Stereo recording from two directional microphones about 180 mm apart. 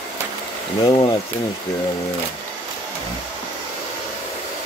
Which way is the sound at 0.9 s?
25° left (ahead or behind).